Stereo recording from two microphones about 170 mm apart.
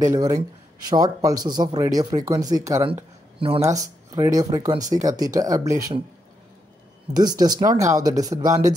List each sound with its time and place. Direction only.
0.0 s speech: 20° right (ahead or behind)
3.3 s speech: 35° right (ahead or behind)
3.6 s speech: 20° right (ahead or behind)
7.2 s speech: 25° right (ahead or behind)